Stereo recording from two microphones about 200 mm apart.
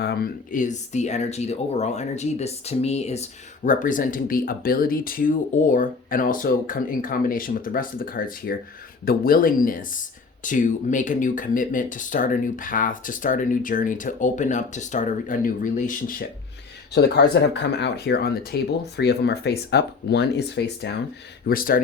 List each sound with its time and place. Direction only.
0.0 s speech: 50° left (ahead or behind)
16.9 s speech: 55° left (ahead or behind)
21.4 s speech: 45° left (ahead or behind)